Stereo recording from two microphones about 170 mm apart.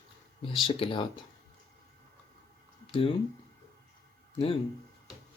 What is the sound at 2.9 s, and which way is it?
Speech, 30° left (ahead or behind).